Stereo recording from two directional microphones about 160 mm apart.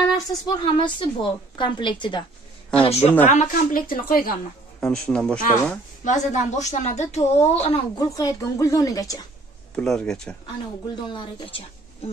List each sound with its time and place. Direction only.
0.1 s a woman's voice: 25° left (ahead or behind); by 3.2 s 40° left (ahead or behind)
3.3 s a woman's voice: 55° left (ahead or behind)
4.7 s speech: 5° left (ahead or behind)
6.0 s a woman's voice: 50° left (ahead or behind)
7.6 s a woman's voice: 30° left (ahead or behind)
9.8 s speech: 5° left (ahead or behind)
11.1 s a woman's voice: 30° left (ahead or behind)